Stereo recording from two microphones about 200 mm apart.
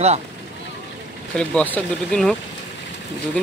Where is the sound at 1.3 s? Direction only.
5° left (ahead or behind).